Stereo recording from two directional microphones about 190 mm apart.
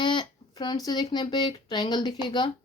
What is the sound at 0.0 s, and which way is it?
Speech, 25° left (ahead or behind).